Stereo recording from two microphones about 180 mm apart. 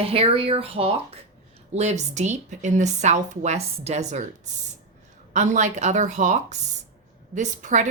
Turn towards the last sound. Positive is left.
turn(degrees=-40)  # may be behind; listen again after turning